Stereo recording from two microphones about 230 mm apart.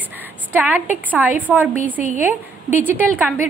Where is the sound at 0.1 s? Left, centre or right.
Centre.